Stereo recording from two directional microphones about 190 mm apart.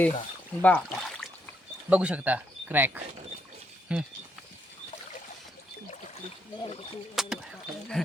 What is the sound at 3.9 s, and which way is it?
Speech, 5° right (ahead or behind).